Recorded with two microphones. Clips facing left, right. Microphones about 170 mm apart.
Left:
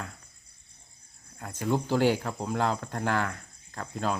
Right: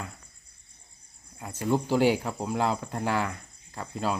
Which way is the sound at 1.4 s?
5° right (ahead or behind).